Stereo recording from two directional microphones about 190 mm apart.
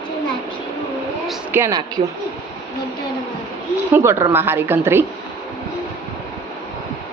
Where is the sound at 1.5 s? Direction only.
15° right (ahead or behind).